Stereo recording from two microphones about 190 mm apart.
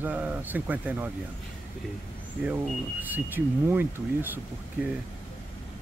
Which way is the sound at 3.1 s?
10° right (ahead or behind).